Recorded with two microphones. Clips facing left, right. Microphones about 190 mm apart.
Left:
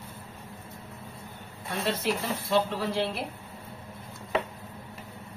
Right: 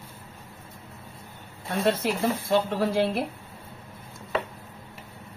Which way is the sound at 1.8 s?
50° right (ahead or behind).